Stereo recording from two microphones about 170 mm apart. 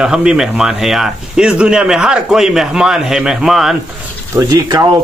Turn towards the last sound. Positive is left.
turn(degrees=-20)  # may be behind; listen again after turning